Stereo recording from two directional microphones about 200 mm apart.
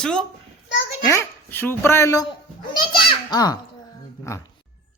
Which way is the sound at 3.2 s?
20° left (ahead or behind).